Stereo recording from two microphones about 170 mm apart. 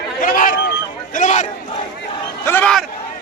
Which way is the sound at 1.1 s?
45° left (ahead or behind).